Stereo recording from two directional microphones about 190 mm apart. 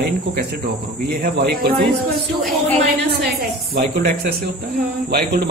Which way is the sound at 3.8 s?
55° right (ahead or behind).